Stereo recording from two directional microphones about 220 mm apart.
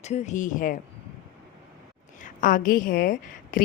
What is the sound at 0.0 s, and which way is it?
Speech, 30° left (ahead or behind).